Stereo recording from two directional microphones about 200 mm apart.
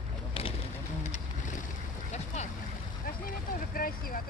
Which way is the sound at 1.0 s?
35° left (ahead or behind).